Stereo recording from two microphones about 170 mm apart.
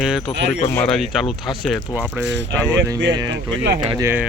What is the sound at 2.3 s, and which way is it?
Speech, 90° right.